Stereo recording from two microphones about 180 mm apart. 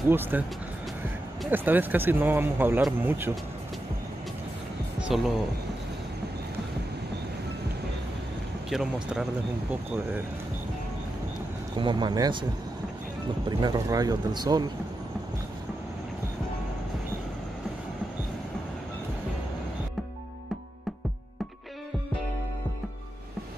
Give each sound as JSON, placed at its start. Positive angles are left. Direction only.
{"t": 0.1, "sound": "speech", "side_deg": -10}
{"t": 1.5, "sound": "speech", "side_deg": -10}
{"t": 8.6, "sound": "speech", "side_deg": 0}
{"t": 11.7, "sound": "speech", "side_deg": -25}
{"t": 13.5, "sound": "speech", "side_deg": -25}